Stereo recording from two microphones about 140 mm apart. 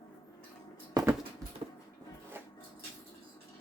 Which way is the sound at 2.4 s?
15° right (ahead or behind).